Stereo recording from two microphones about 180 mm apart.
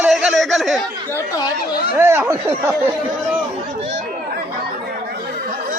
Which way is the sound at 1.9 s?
10° right (ahead or behind).